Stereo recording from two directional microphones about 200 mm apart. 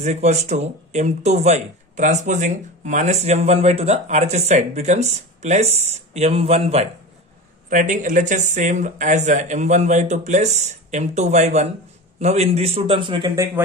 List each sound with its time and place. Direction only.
0.0 s a man's voice: 35° right (ahead or behind)